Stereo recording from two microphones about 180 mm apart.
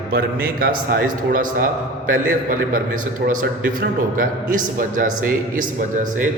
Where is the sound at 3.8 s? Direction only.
50° right (ahead or behind).